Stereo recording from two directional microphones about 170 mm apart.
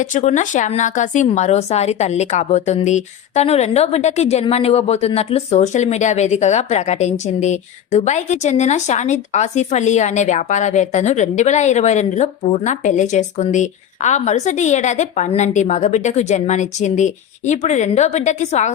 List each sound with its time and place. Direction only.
0.0 s speech: 50° left (ahead or behind)